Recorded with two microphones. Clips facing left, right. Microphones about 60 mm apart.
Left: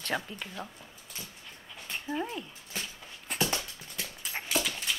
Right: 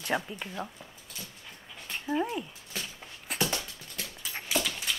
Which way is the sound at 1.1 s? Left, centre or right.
Left.